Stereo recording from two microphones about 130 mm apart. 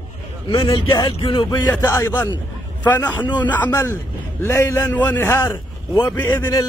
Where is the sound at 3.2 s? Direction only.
35° left (ahead or behind).